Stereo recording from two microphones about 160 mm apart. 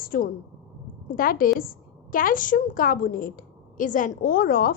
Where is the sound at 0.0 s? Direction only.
60° left (ahead or behind).